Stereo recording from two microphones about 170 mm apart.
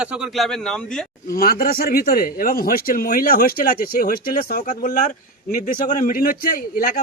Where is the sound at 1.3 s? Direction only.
60° left (ahead or behind).